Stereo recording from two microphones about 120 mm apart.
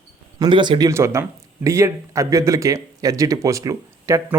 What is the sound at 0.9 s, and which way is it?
Speech, 25° right (ahead or behind).